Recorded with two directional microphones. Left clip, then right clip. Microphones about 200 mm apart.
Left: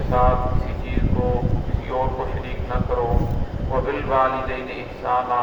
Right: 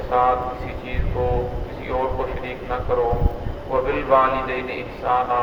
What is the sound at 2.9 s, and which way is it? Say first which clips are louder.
Speech: right 3 dB; 45° right (ahead or behind).